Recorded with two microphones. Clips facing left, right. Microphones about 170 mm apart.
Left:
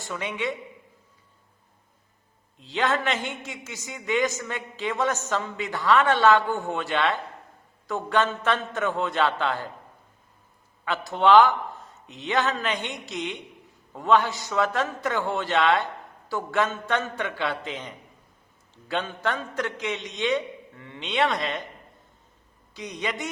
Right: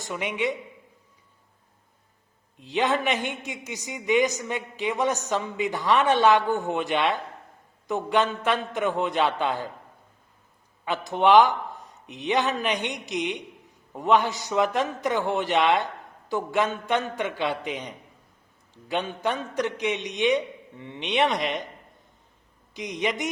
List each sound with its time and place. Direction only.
0.1 s a man's voice: 15° right (ahead or behind)
2.6 s a man's voice: 15° right (ahead or behind)
10.8 s a man's voice: 20° right (ahead or behind)
22.7 s a man's voice: 15° right (ahead or behind)